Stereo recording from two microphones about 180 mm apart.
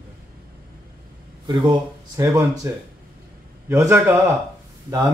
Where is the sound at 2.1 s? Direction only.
20° right (ahead or behind).